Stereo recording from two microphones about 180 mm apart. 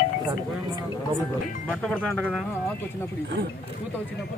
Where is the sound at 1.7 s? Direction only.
5° left (ahead or behind).